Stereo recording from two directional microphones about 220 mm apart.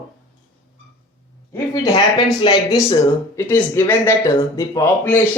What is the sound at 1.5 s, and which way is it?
Speech, 15° left (ahead or behind).